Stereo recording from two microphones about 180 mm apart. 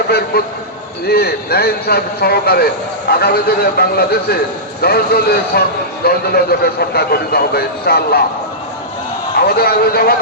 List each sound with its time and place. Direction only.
0.3 s speech: 60° left (ahead or behind)
9.4 s speech: 60° left (ahead or behind)